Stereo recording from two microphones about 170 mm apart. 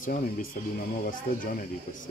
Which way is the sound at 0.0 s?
50° left (ahead or behind).